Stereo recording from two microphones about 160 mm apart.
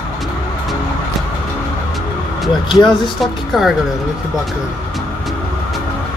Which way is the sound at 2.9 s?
Centre (ahead or behind).